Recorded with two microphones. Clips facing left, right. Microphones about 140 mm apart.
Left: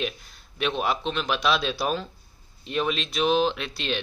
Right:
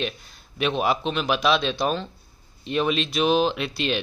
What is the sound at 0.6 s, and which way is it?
Speech, 5° right (ahead or behind).